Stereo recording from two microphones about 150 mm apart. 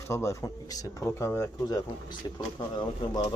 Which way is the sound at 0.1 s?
20° left (ahead or behind).